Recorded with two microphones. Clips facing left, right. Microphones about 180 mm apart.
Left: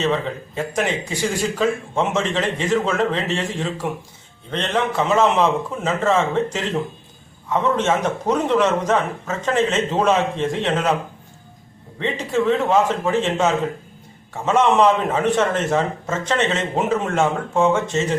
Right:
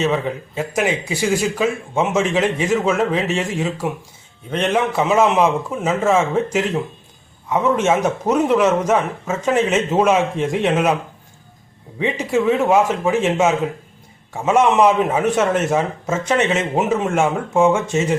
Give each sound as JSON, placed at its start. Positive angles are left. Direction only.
{"t": 0.0, "sound": "speech", "side_deg": -10}
{"t": 11.9, "sound": "speech", "side_deg": -10}